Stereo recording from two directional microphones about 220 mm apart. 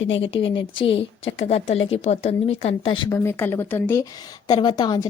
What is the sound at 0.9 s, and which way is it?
Speech, 25° left (ahead or behind).